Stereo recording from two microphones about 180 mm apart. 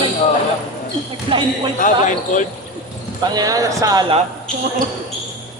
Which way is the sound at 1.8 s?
45° left (ahead or behind).